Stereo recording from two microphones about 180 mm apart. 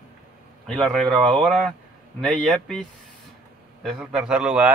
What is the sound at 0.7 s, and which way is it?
Speech, centre (ahead or behind).